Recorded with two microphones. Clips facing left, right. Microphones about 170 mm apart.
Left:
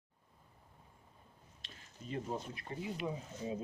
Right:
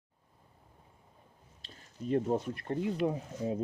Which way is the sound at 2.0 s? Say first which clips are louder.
Right 10 dB; 55° right (ahead or behind).